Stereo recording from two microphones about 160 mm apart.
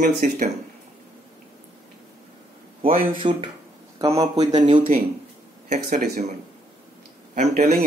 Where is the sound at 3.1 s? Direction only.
30° right (ahead or behind).